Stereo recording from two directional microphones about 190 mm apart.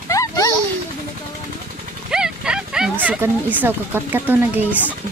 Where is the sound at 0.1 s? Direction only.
15° left (ahead or behind).